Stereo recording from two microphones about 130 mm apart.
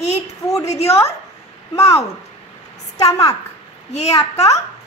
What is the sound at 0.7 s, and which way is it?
Child singing, 55° left (ahead or behind).